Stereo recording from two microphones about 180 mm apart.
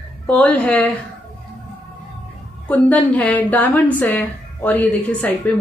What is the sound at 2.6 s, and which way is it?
A woman's voice, 10° left (ahead or behind).